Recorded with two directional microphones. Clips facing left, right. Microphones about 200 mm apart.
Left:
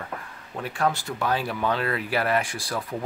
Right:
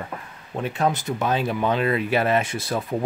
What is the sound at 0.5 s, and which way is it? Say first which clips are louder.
Speech: right 3 dB; 20° right (ahead or behind).